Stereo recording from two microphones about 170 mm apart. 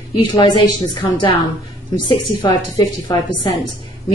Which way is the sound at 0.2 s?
25° left (ahead or behind).